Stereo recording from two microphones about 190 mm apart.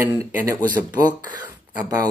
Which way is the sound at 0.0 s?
10° right (ahead or behind).